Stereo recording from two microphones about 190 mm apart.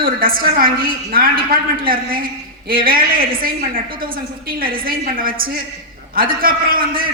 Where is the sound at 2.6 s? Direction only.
50° right (ahead or behind).